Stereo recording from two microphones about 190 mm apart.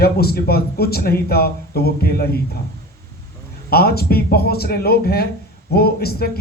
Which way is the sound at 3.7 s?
55° left (ahead or behind).